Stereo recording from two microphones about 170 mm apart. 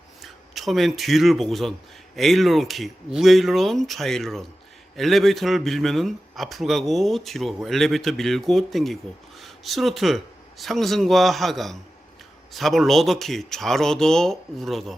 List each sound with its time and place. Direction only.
0.2 s a man's voice: centre (ahead or behind)